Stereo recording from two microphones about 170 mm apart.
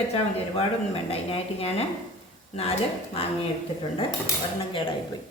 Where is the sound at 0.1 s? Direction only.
35° left (ahead or behind).